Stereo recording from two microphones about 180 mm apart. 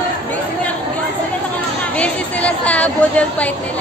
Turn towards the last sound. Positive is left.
turn(degrees=5)  # may be behind; listen again after turning